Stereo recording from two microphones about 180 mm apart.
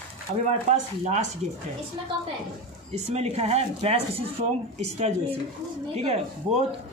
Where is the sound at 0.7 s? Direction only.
40° right (ahead or behind).